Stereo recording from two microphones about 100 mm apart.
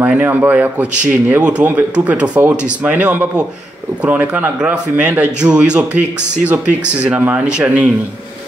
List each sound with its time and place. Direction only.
0.0 s a man's voice: 15° right (ahead or behind)